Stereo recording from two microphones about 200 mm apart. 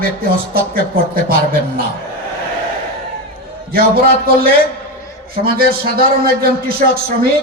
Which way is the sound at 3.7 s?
50° right (ahead or behind).